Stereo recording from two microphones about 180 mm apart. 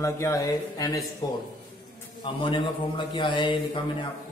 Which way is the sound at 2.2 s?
25° left (ahead or behind).